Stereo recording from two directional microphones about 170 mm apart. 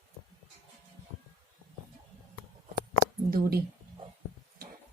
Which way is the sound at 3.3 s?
60° right (ahead or behind).